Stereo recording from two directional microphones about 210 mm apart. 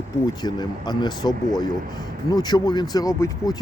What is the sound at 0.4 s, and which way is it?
Speech, 20° left (ahead or behind).